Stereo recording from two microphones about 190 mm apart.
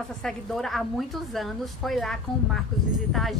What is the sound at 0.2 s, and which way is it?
A woman's voice, centre (ahead or behind).